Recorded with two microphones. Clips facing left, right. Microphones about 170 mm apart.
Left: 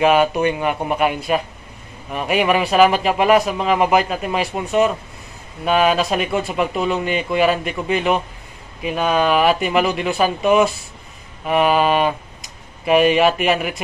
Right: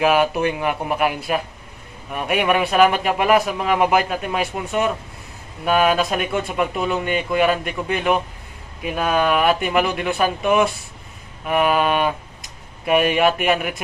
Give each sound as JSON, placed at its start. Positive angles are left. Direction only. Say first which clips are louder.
{"t": 0.0, "sound": "speech", "louder": "left 2 dB", "side_deg": -5}